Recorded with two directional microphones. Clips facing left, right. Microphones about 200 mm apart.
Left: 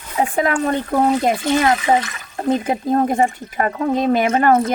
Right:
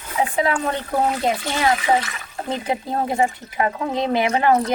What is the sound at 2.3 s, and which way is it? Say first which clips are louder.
Speech: left 6 dB; 45° left (ahead or behind).